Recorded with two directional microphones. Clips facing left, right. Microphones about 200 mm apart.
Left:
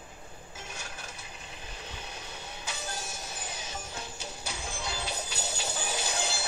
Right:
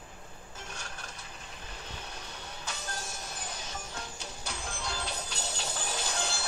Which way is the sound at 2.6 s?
5° left (ahead or behind).